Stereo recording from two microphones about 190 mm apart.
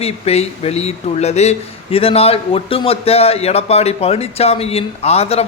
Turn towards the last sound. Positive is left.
turn(degrees=30)  # may be behind; listen again after turning